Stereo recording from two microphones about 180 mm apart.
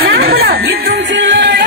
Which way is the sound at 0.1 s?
60° right (ahead or behind).